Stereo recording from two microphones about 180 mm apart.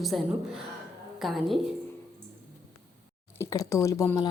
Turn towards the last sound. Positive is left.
turn(degrees=20)  # may be behind; listen again after turning